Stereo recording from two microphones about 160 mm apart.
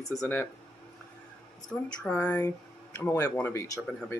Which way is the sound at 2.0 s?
10° left (ahead or behind).